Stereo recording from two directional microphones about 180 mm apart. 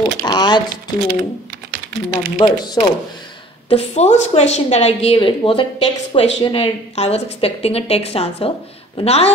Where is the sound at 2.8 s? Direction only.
15° left (ahead or behind).